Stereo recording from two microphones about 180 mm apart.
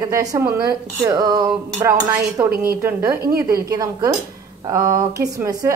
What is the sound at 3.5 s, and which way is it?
A woman's voice, 20° right (ahead or behind).